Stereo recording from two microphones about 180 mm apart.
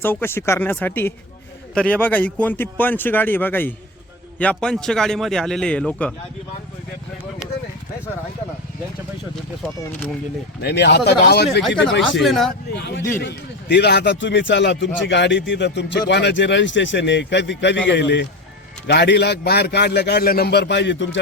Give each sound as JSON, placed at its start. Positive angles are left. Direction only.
{"t": 0.0, "sound": "a man's voice", "side_deg": 10}
{"t": 10.6, "sound": "speech", "side_deg": 65}
{"t": 11.9, "sound": "speech", "side_deg": 90}
{"t": 12.2, "sound": "a man's voice", "side_deg": 0}
{"t": 12.7, "sound": "a man's voice", "side_deg": 75}
{"t": 13.0, "sound": "speech", "side_deg": 15}
{"t": 13.2, "sound": "a man's voice", "side_deg": 70}